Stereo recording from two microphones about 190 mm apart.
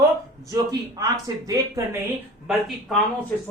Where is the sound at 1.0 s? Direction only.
15° right (ahead or behind).